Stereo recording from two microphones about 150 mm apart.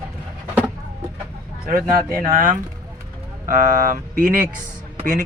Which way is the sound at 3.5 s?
70° right (ahead or behind).